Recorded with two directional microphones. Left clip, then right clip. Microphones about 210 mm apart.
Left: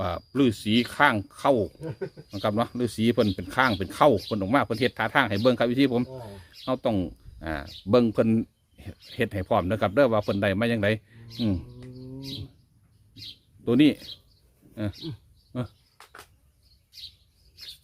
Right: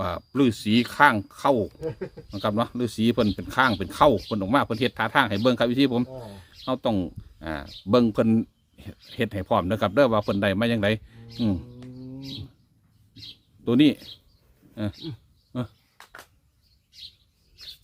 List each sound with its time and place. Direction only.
0.0 s speech: 10° right (ahead or behind)
1.8 s speech: 45° right (ahead or behind)
2.3 s speech: centre (ahead or behind)
13.7 s speech: 5° right (ahead or behind)